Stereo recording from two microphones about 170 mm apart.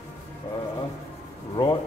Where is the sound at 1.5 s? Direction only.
25° left (ahead or behind).